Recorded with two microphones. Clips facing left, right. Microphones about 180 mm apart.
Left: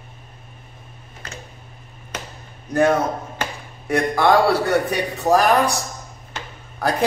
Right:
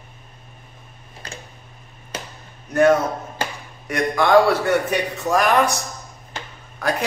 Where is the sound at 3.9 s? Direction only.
35° left (ahead or behind).